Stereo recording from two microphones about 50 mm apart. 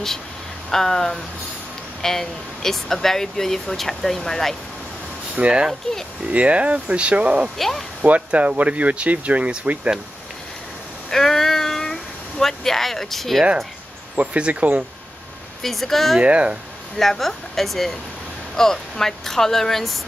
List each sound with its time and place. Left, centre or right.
0.7 s speech: centre
5.3 s speech: right
7.5 s speech: centre
8.0 s speech: right
11.1 s a sound: centre
14.1 s speech: right
15.6 s speech: centre
16.2 s speech: right
17.0 s speech: centre